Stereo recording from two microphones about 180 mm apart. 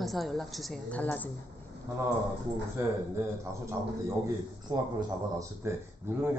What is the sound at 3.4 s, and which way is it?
A man's voice, 15° right (ahead or behind).